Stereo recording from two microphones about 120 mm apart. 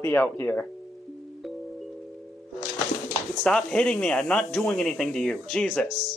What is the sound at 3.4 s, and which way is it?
Speech, 5° left (ahead or behind).